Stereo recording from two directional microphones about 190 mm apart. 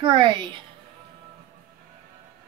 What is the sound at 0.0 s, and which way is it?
Speech, 25° right (ahead or behind).